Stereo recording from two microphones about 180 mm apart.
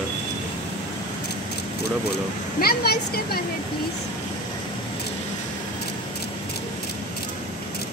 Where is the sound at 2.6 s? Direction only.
60° left (ahead or behind).